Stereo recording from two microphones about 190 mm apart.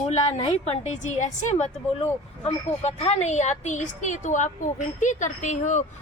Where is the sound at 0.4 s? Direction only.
35° left (ahead or behind).